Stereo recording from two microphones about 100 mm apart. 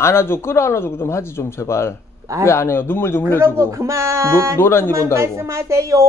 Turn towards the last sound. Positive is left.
turn(degrees=-30)  # may be behind; listen again after turning